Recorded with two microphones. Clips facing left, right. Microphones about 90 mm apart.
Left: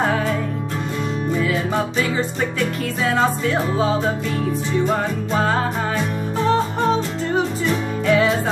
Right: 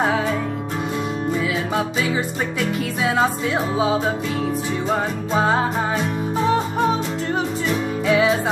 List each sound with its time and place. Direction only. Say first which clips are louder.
3.0 s music: left 1 dB; 10° right (ahead or behind)
7.3 s music: left 3 dB; 5° right (ahead or behind)